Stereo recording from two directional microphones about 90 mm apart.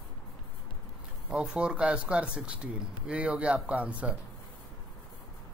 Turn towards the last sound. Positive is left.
turn(degrees=-15)  # may be behind; listen again after turning